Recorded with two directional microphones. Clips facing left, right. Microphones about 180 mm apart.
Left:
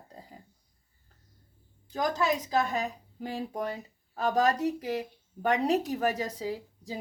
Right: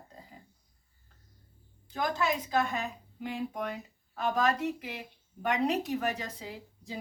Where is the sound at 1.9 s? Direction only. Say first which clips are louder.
Left 3 dB; 40° left (ahead or behind).